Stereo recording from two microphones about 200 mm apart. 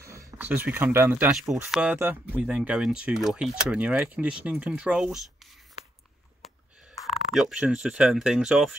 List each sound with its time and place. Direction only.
0.0 s speech: 15° right (ahead or behind)
7.1 s speech: centre (ahead or behind)